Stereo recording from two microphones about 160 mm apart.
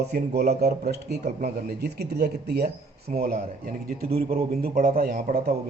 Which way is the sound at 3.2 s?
70° right (ahead or behind).